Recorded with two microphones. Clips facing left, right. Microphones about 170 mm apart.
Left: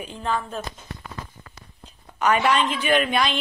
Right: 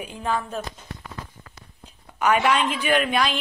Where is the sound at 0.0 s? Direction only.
10° right (ahead or behind).